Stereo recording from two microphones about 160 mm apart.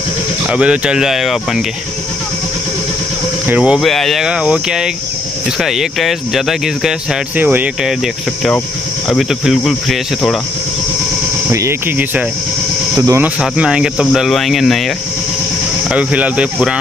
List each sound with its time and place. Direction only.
0.5 s speech: 5° right (ahead or behind)
3.4 s speech: 5° right (ahead or behind)
9.1 s speech: centre (ahead or behind)
11.5 s speech: 15° right (ahead or behind)
13.2 s speech: 5° right (ahead or behind)
15.9 s speech: 10° right (ahead or behind)